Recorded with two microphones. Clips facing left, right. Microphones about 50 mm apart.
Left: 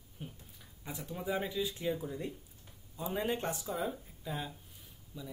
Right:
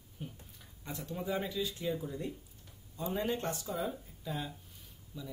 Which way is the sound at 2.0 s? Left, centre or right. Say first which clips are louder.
Even; centre.